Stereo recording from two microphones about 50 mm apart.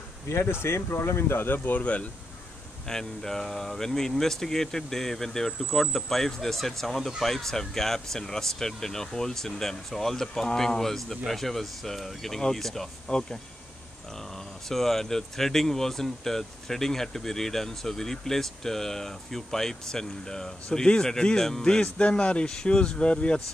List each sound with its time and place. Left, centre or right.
0.3 s speech: left
1.8 s speech: left
2.9 s speech: centre
13.1 s speech: left
14.7 s speech: centre; by 23.4 s left